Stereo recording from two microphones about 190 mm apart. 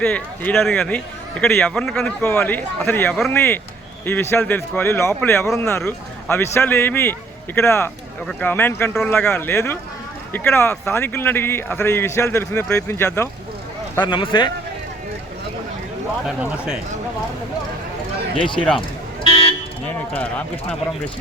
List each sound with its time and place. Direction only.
0.0 s speech: 10° left (ahead or behind)
14.0 s speech: 25° left (ahead or behind)
16.2 s speech: 5° right (ahead or behind)
19.2 s vehicle: 30° left (ahead or behind)
20.1 s speech: 5° left (ahead or behind)